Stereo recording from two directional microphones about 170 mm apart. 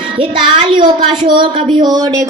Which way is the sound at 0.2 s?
30° right (ahead or behind).